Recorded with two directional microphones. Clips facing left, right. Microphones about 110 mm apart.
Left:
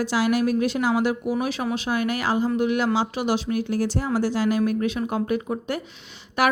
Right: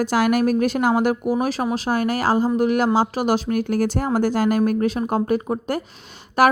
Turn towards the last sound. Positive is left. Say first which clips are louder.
# right 5 dB
turn(degrees=-40)  # may be behind; listen again after turning